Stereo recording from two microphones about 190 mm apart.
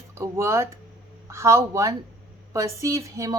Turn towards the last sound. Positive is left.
turn(degrees=-15)  # may be behind; listen again after turning